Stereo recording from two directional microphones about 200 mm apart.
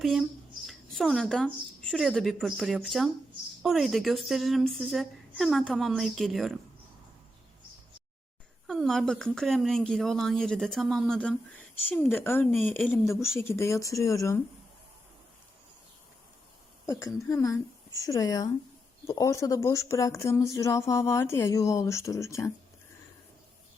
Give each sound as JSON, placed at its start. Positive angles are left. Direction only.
{"t": 0.0, "sound": "a woman's voice", "side_deg": 0}
{"t": 0.7, "sound": "a sound", "side_deg": 0}
{"t": 1.9, "sound": "a woman's voice", "side_deg": 0}
{"t": 8.6, "sound": "a woman's voice", "side_deg": 0}
{"t": 16.8, "sound": "speech", "side_deg": 15}